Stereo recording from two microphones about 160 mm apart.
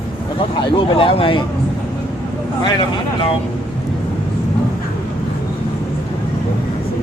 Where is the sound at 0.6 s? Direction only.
30° left (ahead or behind).